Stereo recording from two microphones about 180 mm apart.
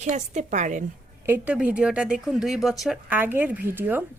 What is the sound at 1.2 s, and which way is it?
Speech, 10° right (ahead or behind).